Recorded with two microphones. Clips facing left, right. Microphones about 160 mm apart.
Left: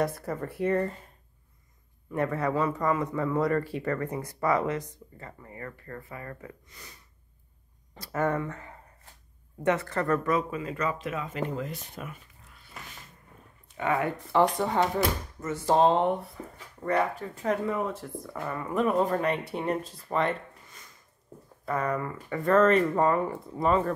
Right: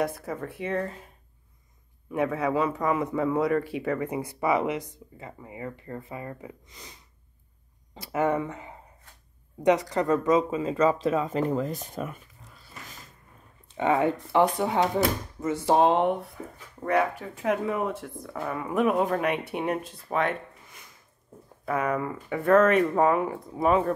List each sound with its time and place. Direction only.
0.0 s speech: 5° right (ahead or behind)
2.0 s speech: 5° right (ahead or behind)
8.0 s speech: 10° right (ahead or behind); by 12.9 s 40° right (ahead or behind)
13.7 s speech: 25° right (ahead or behind)
14.3 s speech: 5° right (ahead or behind)
21.6 s speech: 5° right (ahead or behind)